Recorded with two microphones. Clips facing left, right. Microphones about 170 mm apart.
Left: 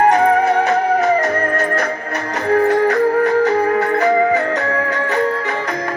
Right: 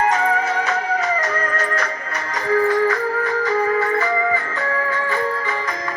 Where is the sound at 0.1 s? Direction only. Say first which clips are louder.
Left 7 dB; 60° left (ahead or behind).